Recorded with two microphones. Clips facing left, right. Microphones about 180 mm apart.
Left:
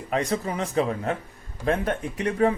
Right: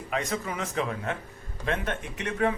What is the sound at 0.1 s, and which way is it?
Speech, 35° left (ahead or behind).